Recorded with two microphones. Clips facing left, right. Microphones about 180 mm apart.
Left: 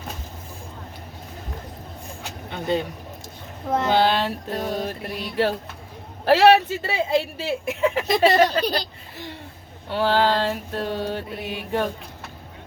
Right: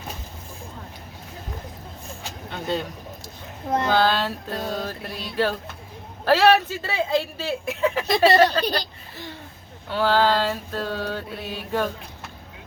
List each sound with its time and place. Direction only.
2.5 s a sound: 15° left (ahead or behind)
3.8 s speech: 20° left (ahead or behind)
9.9 s speech: 25° left (ahead or behind)